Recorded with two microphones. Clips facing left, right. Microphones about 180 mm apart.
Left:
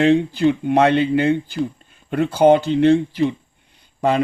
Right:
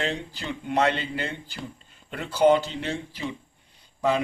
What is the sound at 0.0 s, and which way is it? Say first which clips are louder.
Speech: left 16 dB; 60° left (ahead or behind).